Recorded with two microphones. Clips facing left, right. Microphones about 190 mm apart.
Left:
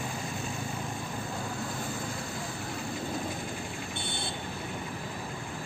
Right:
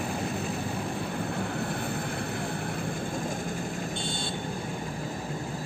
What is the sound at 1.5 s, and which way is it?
Vehicle, 60° right (ahead or behind).